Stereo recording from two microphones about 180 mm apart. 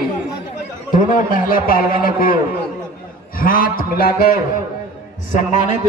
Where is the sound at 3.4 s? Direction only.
50° left (ahead or behind).